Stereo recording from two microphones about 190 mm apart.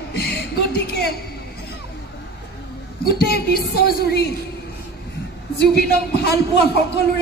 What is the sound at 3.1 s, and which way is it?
A woman's voice, 55° left (ahead or behind).